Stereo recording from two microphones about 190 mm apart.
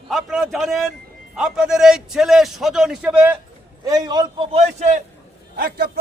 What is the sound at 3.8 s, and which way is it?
A man's voice, 20° right (ahead or behind).